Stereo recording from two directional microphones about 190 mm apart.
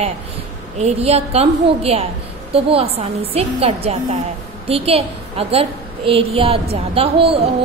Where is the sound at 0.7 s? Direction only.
35° right (ahead or behind).